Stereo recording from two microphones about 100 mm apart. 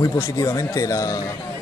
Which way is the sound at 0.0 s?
35° left (ahead or behind).